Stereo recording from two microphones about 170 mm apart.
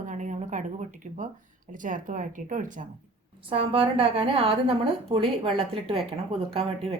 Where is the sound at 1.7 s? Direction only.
50° right (ahead or behind).